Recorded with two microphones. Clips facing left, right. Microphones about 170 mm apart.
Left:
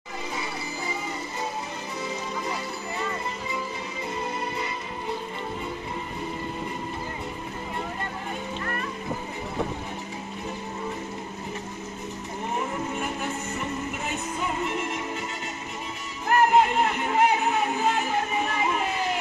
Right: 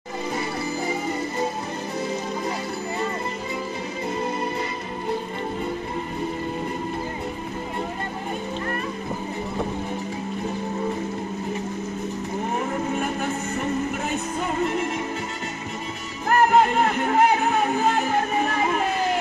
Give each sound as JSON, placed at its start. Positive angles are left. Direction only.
{"t": 16.3, "sound": "music", "side_deg": -45}